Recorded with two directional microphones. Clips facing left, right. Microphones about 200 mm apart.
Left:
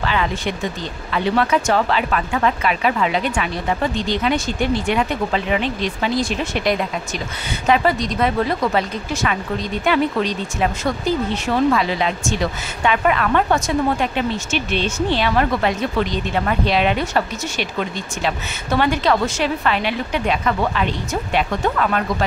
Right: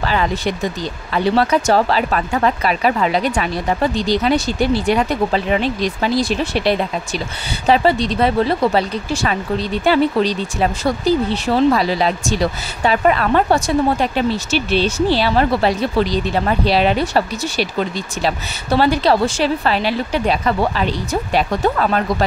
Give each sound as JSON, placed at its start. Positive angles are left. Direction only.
{"t": 0.0, "sound": "speech", "side_deg": -40}